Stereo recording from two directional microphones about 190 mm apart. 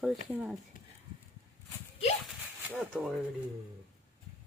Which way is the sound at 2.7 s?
5° right (ahead or behind).